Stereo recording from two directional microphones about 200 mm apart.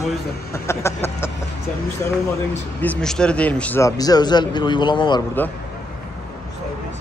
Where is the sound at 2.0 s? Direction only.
10° left (ahead or behind).